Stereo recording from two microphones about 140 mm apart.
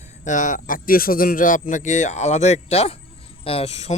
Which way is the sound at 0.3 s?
65° left (ahead or behind).